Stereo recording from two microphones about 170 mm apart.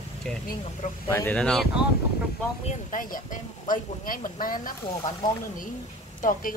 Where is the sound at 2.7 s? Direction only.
50° left (ahead or behind).